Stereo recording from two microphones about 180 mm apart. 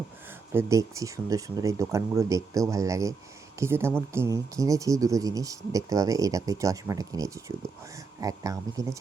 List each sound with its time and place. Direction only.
0.5 s speech: 15° right (ahead or behind)